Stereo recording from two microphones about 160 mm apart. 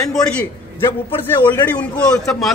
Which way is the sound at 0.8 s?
15° left (ahead or behind).